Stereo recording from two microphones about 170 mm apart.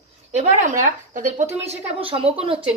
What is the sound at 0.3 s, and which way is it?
Speech, 45° right (ahead or behind).